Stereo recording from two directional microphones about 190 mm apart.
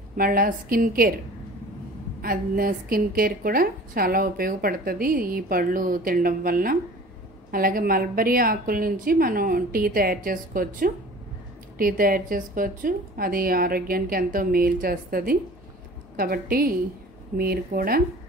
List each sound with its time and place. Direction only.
0.2 s a woman's voice: 50° right (ahead or behind)
2.2 s a woman's voice: 50° right (ahead or behind)